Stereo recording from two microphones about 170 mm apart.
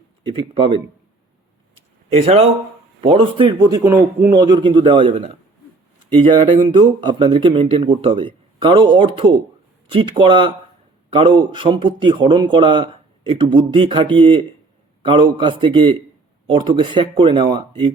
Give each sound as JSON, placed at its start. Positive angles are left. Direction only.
{"t": 0.3, "sound": "a man's voice", "side_deg": -30}
{"t": 2.1, "sound": "a man's voice", "side_deg": -35}
{"t": 6.3, "sound": "a man's voice", "side_deg": -25}